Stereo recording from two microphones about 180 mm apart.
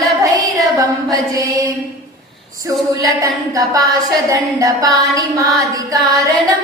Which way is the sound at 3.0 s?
20° right (ahead or behind).